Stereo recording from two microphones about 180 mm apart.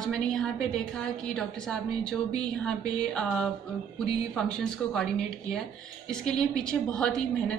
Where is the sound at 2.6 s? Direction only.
5° left (ahead or behind).